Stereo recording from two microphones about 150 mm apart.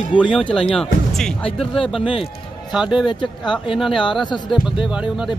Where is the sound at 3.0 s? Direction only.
30° left (ahead or behind).